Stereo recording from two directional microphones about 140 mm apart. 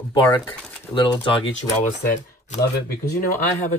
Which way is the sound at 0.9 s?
30° left (ahead or behind).